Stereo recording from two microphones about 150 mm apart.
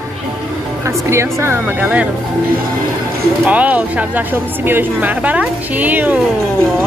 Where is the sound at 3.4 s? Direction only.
10° right (ahead or behind).